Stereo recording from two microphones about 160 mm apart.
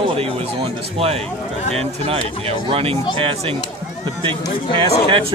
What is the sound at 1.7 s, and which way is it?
Speech, 40° right (ahead or behind).